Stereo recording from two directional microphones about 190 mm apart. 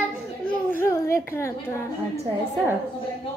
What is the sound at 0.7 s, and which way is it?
Speech, 15° left (ahead or behind).